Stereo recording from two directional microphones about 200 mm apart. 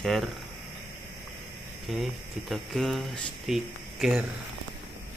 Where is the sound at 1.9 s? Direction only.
Centre (ahead or behind).